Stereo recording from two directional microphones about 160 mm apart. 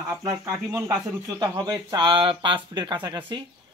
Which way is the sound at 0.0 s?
15° right (ahead or behind).